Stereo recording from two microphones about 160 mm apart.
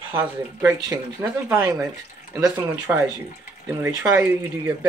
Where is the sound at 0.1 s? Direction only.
15° right (ahead or behind).